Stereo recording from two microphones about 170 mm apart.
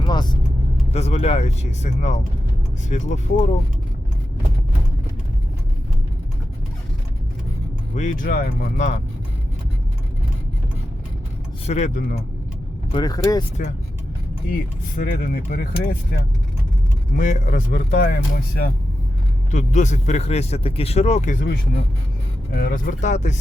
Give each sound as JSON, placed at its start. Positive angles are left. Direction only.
{"t": 0.0, "sound": "vehicle", "side_deg": 25}
{"t": 0.9, "sound": "speech", "side_deg": 40}
{"t": 7.9, "sound": "speech", "side_deg": 50}
{"t": 11.6, "sound": "speech", "side_deg": 45}
{"t": 12.9, "sound": "speech", "side_deg": 25}
{"t": 14.5, "sound": "speech", "side_deg": 55}
{"t": 17.2, "sound": "speech", "side_deg": 50}
{"t": 19.5, "sound": "speech", "side_deg": 45}
{"t": 22.5, "sound": "speech", "side_deg": 55}